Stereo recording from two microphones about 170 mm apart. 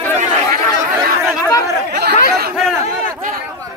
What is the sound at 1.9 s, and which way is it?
Speech, 75° right (ahead or behind).